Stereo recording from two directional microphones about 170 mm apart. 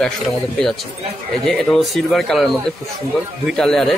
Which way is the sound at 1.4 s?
Centre (ahead or behind).